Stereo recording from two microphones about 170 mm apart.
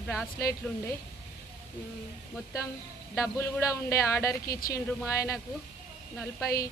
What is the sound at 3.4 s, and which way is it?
Speech, 15° left (ahead or behind).